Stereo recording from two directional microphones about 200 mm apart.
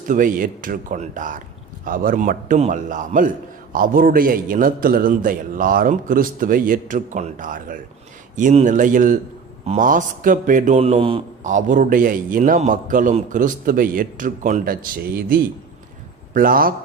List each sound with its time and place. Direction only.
0.1 s a man's voice: 40° right (ahead or behind)